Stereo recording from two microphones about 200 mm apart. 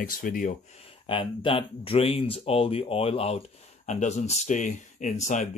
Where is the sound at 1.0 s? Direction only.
25° left (ahead or behind).